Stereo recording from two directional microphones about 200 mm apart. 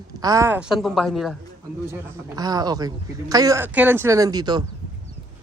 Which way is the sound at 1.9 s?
20° right (ahead or behind).